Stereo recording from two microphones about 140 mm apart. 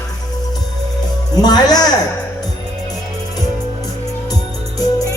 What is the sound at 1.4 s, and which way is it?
Speech, 30° left (ahead or behind).